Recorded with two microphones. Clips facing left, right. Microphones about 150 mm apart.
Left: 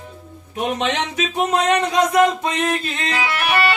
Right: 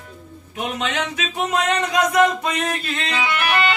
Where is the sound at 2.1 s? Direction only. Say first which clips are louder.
Left 1 dB; 25° left (ahead or behind).